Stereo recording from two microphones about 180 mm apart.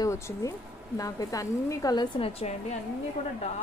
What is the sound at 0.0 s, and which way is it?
Speech, 20° left (ahead or behind).